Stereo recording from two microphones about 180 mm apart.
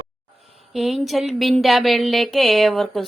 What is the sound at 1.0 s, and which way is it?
Speech, centre (ahead or behind).